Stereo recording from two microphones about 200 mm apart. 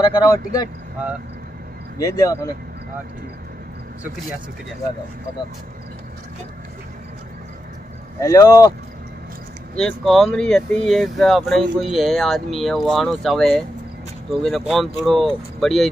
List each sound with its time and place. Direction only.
0.0 s speech: 20° left (ahead or behind)
2.0 s speech: 20° left (ahead or behind)
8.2 s speech: 15° left (ahead or behind)
9.8 s speech: centre (ahead or behind)